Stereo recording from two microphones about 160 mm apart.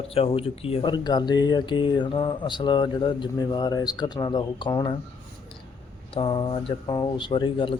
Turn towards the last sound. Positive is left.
turn(degrees=30)  # may be behind; listen again after turning